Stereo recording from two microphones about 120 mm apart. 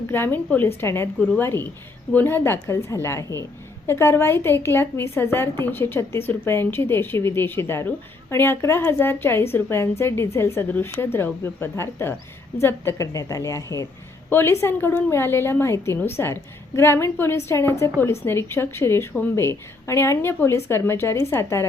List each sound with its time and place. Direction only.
0.1 s a woman's voice: 15° left (ahead or behind)